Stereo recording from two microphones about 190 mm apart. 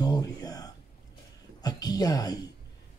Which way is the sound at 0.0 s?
20° left (ahead or behind).